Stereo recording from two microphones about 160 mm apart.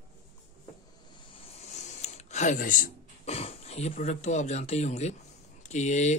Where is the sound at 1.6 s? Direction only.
45° left (ahead or behind).